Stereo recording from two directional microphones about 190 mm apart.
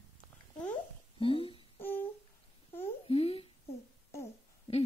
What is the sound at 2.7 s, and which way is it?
Babbling, 10° left (ahead or behind).